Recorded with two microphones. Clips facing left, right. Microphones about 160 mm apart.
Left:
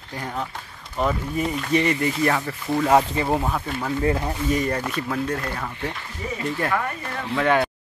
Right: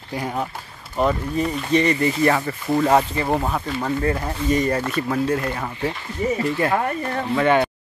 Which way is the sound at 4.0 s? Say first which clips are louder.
Even; 15° left (ahead or behind).